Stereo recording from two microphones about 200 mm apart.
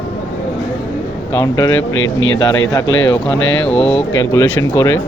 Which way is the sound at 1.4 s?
15° left (ahead or behind).